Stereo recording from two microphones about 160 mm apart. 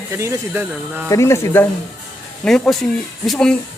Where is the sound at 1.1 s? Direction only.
15° left (ahead or behind).